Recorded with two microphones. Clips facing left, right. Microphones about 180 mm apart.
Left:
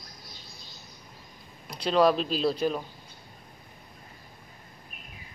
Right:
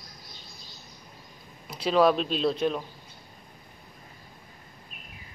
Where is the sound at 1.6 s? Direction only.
5° right (ahead or behind).